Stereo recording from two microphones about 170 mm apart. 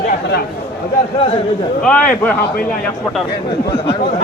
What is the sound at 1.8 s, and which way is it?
Speech, 5° left (ahead or behind).